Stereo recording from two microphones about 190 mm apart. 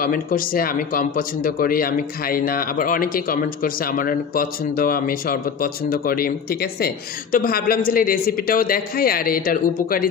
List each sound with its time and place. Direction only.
0.0 s speech: 50° left (ahead or behind)